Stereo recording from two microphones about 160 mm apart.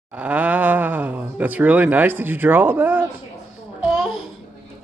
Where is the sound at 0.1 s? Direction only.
10° right (ahead or behind).